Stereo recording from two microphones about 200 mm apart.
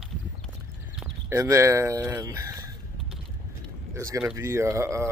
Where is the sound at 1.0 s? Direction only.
15° right (ahead or behind).